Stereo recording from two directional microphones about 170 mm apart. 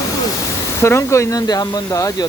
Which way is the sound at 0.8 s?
15° left (ahead or behind).